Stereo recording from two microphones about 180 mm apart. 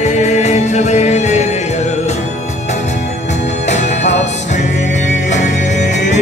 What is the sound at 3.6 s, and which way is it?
Music, 40° left (ahead or behind).